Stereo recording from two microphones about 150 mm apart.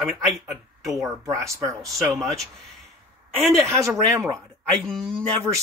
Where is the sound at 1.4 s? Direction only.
20° right (ahead or behind).